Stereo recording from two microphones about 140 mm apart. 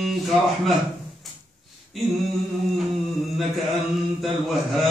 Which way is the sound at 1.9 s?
Centre (ahead or behind).